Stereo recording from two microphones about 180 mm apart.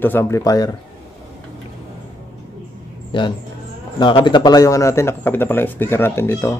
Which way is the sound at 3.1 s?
25° left (ahead or behind).